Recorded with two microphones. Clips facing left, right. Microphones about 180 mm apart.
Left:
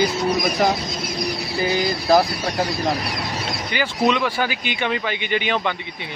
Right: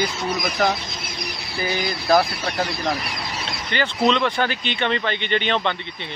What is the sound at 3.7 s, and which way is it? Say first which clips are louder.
Speech: even; 10° left (ahead or behind).